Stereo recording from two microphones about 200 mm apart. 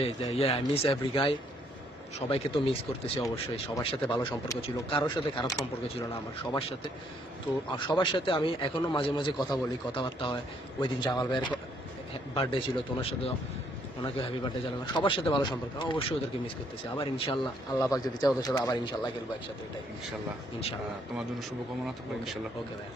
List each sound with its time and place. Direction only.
0.0 s a man's voice: 30° left (ahead or behind)
6.5 s a man's voice: 30° left (ahead or behind)
21.8 s speech: centre (ahead or behind)